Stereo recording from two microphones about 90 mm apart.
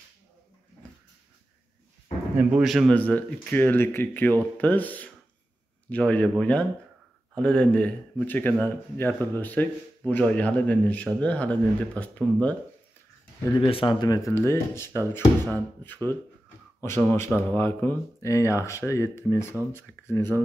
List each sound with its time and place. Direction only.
2.6 s a man's voice: centre (ahead or behind)
2.9 s speech: 15° left (ahead or behind)
13.7 s speech: 70° left (ahead or behind); by 20.4 s 30° left (ahead or behind)